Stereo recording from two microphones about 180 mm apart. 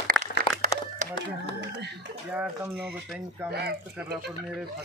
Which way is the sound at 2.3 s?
10° right (ahead or behind).